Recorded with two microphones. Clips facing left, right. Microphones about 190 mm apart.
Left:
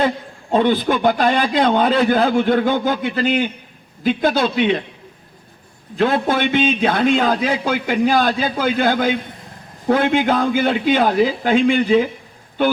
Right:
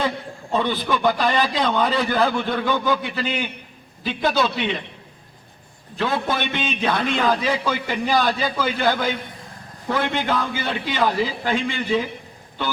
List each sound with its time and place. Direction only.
0.5 s a man's voice: 50° left (ahead or behind)
6.2 s a man's voice: 50° left (ahead or behind)